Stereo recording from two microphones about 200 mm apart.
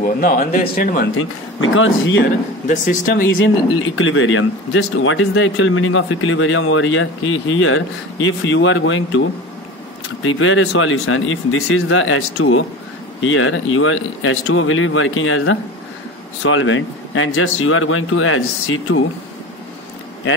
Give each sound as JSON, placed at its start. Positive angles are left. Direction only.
{"t": 0.0, "sound": "a man's voice", "side_deg": 45}
{"t": 1.1, "sound": "speech", "side_deg": 80}
{"t": 2.7, "sound": "a man's voice", "side_deg": 45}
{"t": 3.3, "sound": "speech", "side_deg": 90}
{"t": 8.3, "sound": "speech", "side_deg": 70}
{"t": 10.2, "sound": "speech", "side_deg": 85}
{"t": 16.4, "sound": "speech", "side_deg": 75}